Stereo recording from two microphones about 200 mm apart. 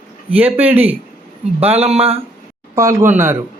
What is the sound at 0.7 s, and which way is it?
A man's voice, 30° right (ahead or behind).